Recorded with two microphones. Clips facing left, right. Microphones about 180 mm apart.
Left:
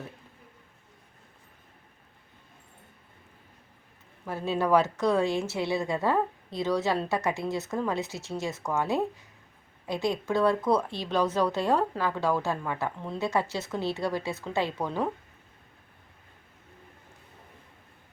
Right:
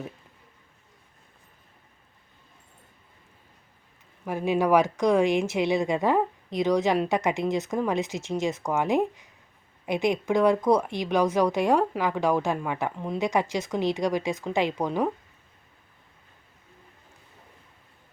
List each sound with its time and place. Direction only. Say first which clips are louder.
4.3 s a woman's voice: right 3 dB; 15° right (ahead or behind)